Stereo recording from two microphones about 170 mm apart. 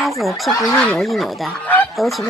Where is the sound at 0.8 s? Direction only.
Centre (ahead or behind).